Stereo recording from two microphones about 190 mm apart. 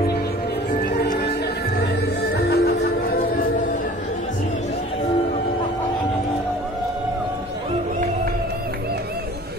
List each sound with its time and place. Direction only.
2.5 s music: 55° left (ahead or behind)